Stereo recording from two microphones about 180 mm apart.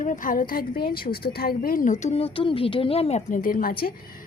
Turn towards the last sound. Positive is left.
turn(degrees=50)  # may be behind; listen again after turning